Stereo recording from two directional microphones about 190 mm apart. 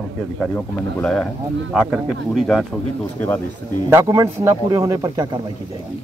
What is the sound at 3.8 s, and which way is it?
A man's voice, 15° right (ahead or behind).